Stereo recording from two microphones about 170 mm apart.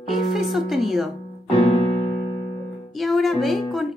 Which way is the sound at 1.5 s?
35° left (ahead or behind).